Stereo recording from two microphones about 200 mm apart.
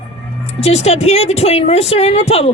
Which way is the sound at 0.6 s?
30° left (ahead or behind).